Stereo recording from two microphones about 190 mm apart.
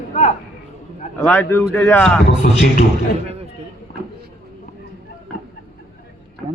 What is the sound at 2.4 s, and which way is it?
Speech, 45° left (ahead or behind).